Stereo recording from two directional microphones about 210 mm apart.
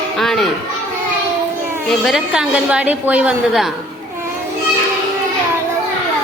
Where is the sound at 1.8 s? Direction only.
Centre (ahead or behind).